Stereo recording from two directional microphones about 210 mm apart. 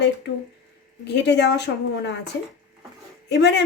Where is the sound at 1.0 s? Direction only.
55° left (ahead or behind).